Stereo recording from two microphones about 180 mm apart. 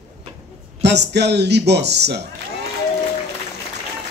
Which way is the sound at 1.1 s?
70° right (ahead or behind).